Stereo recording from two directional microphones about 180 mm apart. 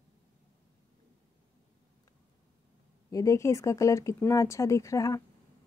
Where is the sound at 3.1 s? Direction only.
15° left (ahead or behind).